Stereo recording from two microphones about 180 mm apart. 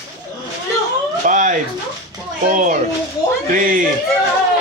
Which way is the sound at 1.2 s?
45° right (ahead or behind).